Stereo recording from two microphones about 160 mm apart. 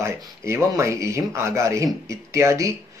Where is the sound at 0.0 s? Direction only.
15° right (ahead or behind).